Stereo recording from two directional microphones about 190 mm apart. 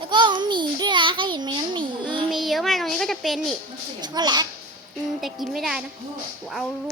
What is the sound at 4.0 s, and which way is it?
Speech, 20° right (ahead or behind).